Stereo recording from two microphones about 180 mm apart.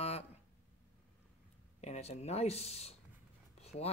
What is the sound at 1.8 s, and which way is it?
Speech, 35° left (ahead or behind).